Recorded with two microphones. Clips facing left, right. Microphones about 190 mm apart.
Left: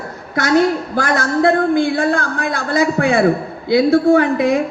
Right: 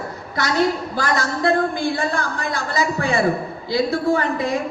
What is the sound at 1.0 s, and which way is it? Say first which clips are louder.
A woman's voice: left 6 dB; 50° left (ahead or behind).